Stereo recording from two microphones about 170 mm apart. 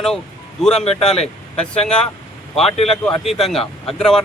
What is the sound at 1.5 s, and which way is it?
Speech, 5° left (ahead or behind).